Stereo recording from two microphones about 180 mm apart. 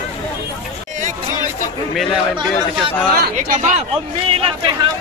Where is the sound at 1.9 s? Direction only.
Centre (ahead or behind).